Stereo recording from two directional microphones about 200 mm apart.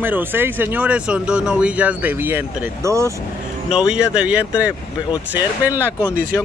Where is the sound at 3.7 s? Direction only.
5° right (ahead or behind).